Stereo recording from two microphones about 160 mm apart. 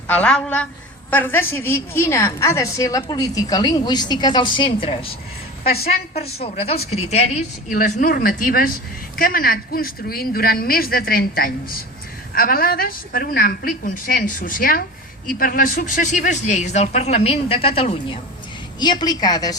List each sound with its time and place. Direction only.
0.1 s a woman's voice: 5° left (ahead or behind); by 5.1 s 35° left (ahead or behind)
5.6 s speech: 75° left (ahead or behind)
6.1 s a woman's voice: 40° left (ahead or behind)
7.7 s a woman's voice: 55° left (ahead or behind); by 19.5 s 25° left (ahead or behind)